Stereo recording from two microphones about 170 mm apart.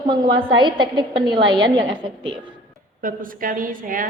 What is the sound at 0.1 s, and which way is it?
A woman's voice, 30° right (ahead or behind).